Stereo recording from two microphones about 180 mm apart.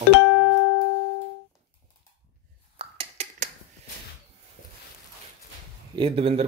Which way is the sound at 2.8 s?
35° right (ahead or behind).